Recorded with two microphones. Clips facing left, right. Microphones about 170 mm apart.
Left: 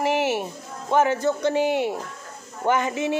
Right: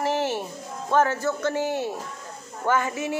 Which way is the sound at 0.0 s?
10° left (ahead or behind).